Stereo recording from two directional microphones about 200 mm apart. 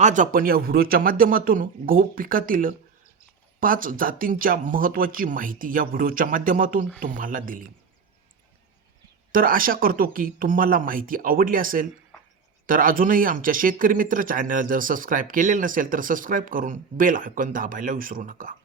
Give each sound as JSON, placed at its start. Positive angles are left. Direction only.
{"t": 0.0, "sound": "speech", "side_deg": -40}
{"t": 9.3, "sound": "speech", "side_deg": -45}